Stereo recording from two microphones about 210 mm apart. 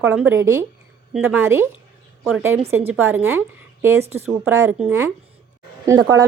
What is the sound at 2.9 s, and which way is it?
Speech, 10° right (ahead or behind).